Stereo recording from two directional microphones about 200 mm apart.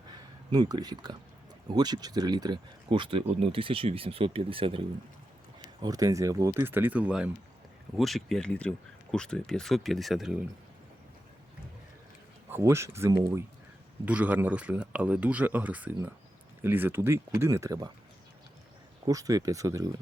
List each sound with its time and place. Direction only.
0.1 s a sound: 20° right (ahead or behind)
1.7 s speech: 20° right (ahead or behind); by 10.3 s centre (ahead or behind)
12.5 s speech: 10° right (ahead or behind)
19.0 s speech: 15° right (ahead or behind)